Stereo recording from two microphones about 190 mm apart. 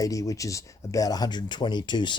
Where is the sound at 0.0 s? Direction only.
15° left (ahead or behind).